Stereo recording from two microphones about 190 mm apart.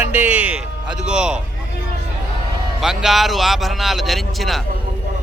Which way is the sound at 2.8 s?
Centre (ahead or behind).